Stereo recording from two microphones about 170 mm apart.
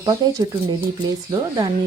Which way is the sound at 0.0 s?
25° right (ahead or behind).